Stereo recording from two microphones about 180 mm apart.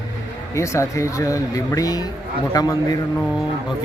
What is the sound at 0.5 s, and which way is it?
A man's voice, 15° left (ahead or behind).